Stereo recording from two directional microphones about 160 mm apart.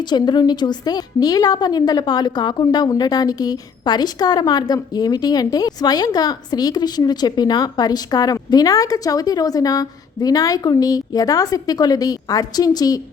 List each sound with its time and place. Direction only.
0.0 s a woman's voice: 25° left (ahead or behind)